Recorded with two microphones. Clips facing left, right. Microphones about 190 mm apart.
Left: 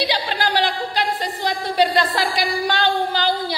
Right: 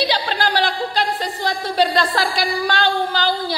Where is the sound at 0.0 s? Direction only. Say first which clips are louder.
Right 2 dB; 15° left (ahead or behind).